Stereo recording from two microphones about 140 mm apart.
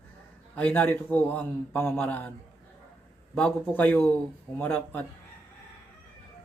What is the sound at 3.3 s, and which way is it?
Speech, 10° left (ahead or behind).